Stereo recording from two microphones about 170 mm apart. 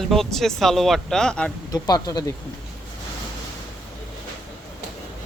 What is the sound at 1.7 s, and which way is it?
Speech, 20° left (ahead or behind).